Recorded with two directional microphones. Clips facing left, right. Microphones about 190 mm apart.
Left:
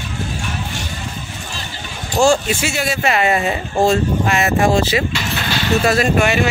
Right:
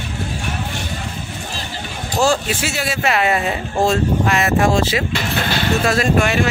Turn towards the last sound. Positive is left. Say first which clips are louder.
# left 1 dB
turn(degrees=0)  # may be behind; listen again after turning